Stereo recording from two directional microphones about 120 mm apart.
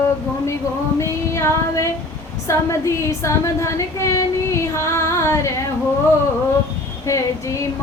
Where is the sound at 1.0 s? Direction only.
25° left (ahead or behind).